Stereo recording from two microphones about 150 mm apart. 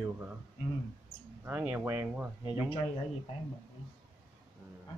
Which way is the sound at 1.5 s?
10° right (ahead or behind).